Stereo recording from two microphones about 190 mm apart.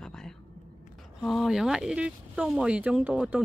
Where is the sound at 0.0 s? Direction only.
5° left (ahead or behind).